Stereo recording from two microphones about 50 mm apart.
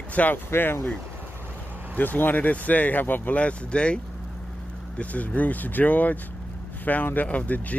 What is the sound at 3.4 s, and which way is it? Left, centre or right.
Speech, left.